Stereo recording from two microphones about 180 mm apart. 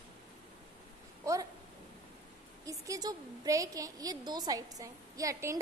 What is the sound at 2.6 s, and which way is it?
A woman's voice, 20° right (ahead or behind).